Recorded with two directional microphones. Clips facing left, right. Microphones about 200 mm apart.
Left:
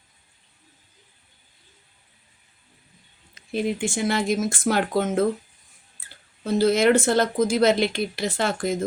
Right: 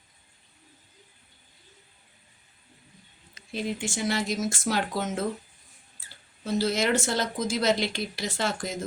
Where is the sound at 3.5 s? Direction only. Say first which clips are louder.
Left 6 dB; 55° left (ahead or behind).